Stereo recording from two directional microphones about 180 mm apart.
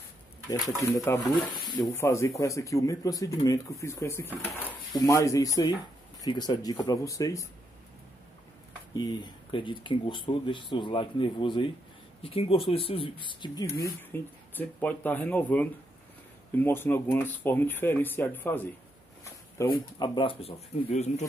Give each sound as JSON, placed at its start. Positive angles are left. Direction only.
{"t": 0.8, "sound": "speech", "side_deg": 15}
{"t": 1.2, "sound": "speech", "side_deg": 0}
{"t": 1.5, "sound": "speech", "side_deg": 20}
{"t": 8.9, "sound": "speech", "side_deg": 25}
{"t": 20.0, "sound": "speech", "side_deg": 30}